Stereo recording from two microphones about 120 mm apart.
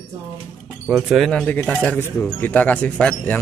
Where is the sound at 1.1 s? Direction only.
5° left (ahead or behind).